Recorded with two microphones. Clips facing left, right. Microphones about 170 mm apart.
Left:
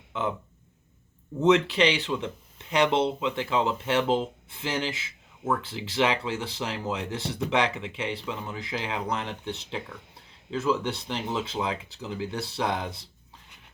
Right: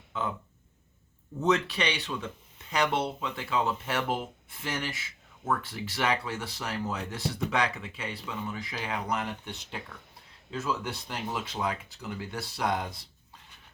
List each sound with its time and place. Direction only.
0.1 s speech: 25° left (ahead or behind)
1.4 s speech: 25° left (ahead or behind)